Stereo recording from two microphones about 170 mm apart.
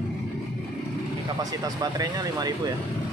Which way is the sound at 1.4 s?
20° right (ahead or behind).